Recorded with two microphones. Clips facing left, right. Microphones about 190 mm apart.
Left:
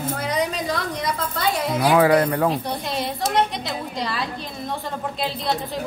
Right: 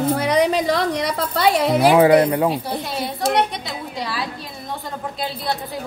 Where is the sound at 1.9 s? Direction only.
20° right (ahead or behind).